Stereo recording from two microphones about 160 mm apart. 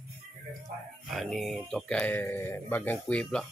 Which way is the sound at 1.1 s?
Centre (ahead or behind).